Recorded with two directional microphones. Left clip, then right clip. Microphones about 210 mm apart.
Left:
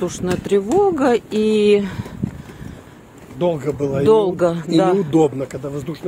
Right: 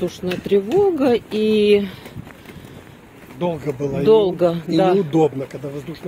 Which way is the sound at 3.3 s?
60° left (ahead or behind).